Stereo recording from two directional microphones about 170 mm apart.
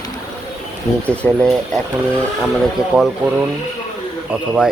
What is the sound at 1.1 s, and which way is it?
Speech, 15° right (ahead or behind).